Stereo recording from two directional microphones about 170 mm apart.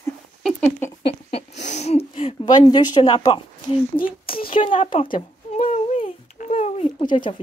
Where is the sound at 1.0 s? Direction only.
40° left (ahead or behind).